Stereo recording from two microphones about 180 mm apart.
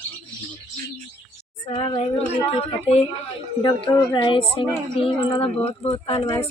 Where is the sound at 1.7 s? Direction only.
30° left (ahead or behind).